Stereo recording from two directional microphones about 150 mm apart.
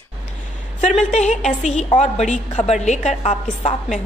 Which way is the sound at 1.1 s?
50° left (ahead or behind).